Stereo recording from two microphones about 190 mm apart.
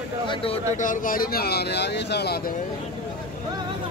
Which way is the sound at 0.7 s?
45° left (ahead or behind).